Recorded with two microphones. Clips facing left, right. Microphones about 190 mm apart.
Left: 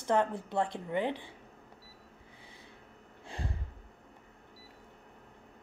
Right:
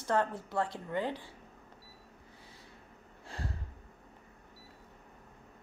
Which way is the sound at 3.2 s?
20° left (ahead or behind).